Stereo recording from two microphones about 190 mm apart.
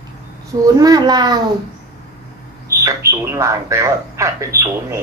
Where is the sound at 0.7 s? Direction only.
20° right (ahead or behind).